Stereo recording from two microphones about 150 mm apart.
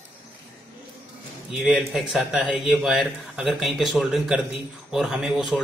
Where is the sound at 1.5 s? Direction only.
Centre (ahead or behind).